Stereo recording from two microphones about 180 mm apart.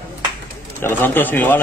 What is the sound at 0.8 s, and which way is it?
Speech, 10° left (ahead or behind).